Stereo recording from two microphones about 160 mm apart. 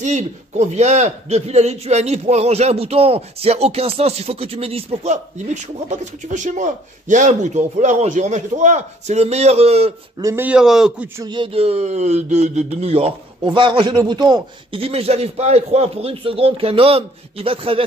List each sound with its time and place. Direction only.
0.0 s a man's voice: 45° right (ahead or behind)
10.2 s a man's voice: 15° right (ahead or behind)
11.2 s speech: 30° right (ahead or behind)